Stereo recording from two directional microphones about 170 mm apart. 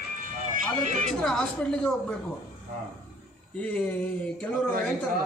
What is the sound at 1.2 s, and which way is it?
Speech, 5° left (ahead or behind).